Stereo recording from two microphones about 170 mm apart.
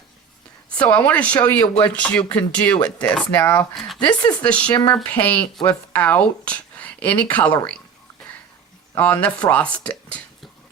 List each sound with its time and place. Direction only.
0.8 s speech: 10° left (ahead or behind)
4.0 s speech: 25° left (ahead or behind)
4.4 s speech: 5° left (ahead or behind)
9.0 s speech: 10° left (ahead or behind)